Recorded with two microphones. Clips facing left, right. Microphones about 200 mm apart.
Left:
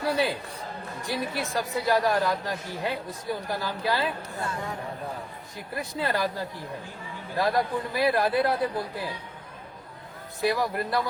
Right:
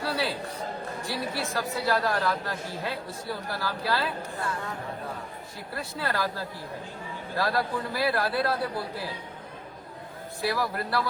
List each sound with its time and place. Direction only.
0.0 s a man's voice: 20° left (ahead or behind)
5.7 s speech: 15° left (ahead or behind)
10.4 s speech: 20° left (ahead or behind)